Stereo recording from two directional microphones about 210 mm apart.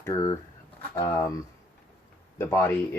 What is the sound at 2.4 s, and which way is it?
Speech, 15° left (ahead or behind).